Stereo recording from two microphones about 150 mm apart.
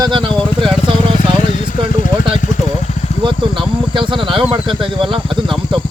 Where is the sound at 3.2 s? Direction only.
35° right (ahead or behind).